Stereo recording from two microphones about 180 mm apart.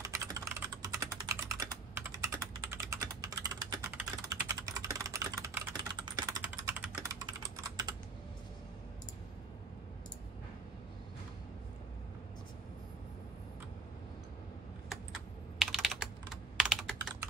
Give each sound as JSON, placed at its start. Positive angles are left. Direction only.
{"t": 0.0, "sound": "typing", "side_deg": -20}
{"t": 6.7, "sound": "typing", "side_deg": -10}
{"t": 7.4, "sound": "computer keyboard", "side_deg": -20}
{"t": 15.6, "sound": "computer keyboard", "side_deg": 0}